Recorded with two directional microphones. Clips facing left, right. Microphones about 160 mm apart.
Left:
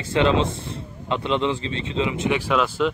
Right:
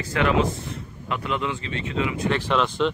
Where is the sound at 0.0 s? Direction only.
25° left (ahead or behind).